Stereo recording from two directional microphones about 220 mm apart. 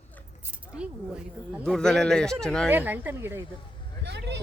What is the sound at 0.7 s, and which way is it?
Speech, 5° right (ahead or behind).